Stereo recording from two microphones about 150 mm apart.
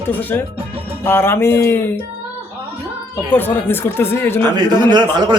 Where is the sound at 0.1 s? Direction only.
10° left (ahead or behind).